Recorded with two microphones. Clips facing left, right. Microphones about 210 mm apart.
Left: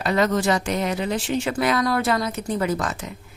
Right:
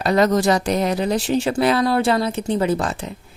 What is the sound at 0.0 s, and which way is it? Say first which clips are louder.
Speech: right 4 dB; 40° right (ahead or behind).